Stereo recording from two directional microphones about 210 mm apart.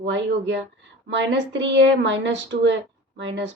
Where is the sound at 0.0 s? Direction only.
60° right (ahead or behind).